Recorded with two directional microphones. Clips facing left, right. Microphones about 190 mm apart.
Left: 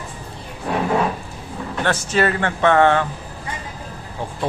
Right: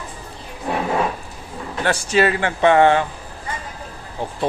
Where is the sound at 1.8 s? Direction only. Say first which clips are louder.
Right 1 dB; 10° right (ahead or behind).